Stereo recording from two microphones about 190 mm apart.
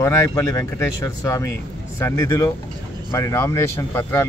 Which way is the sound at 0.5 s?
15° left (ahead or behind).